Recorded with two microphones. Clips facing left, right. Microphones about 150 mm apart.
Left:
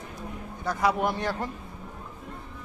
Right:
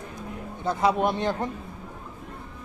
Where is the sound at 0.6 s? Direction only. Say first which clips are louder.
Right 3 dB; 20° right (ahead or behind).